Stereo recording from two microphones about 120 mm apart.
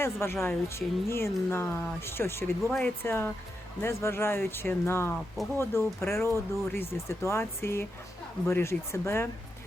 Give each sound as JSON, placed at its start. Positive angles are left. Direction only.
{"t": 0.0, "sound": "speech", "side_deg": 20}